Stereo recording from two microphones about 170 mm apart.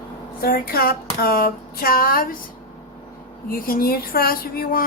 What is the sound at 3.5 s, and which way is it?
Speech, 55° left (ahead or behind).